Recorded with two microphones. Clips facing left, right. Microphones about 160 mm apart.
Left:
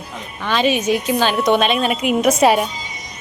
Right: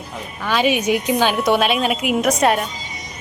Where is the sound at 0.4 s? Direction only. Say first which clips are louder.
Left 1 dB; 10° right (ahead or behind).